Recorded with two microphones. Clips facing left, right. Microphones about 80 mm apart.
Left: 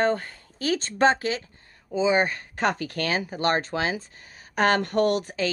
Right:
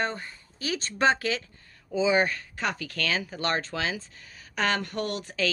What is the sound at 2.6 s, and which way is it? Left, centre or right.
Speech, left.